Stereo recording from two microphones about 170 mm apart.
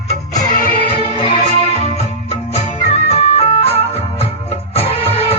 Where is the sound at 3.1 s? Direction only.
40° left (ahead or behind).